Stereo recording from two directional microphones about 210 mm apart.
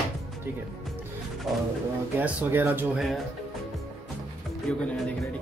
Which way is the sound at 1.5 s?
Centre (ahead or behind).